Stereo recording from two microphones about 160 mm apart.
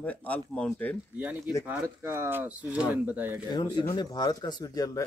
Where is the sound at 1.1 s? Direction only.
10° right (ahead or behind).